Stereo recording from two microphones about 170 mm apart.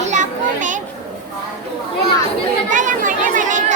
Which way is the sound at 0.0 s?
45° right (ahead or behind).